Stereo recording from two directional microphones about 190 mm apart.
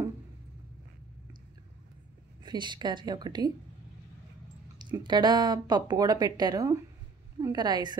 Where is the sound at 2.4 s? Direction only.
25° right (ahead or behind).